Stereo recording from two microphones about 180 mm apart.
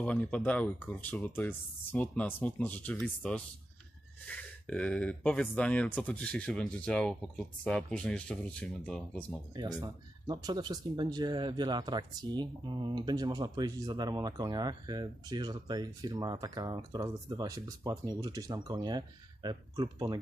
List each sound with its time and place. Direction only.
0.0 s speech: 5° left (ahead or behind)
9.5 s speech: 20° right (ahead or behind)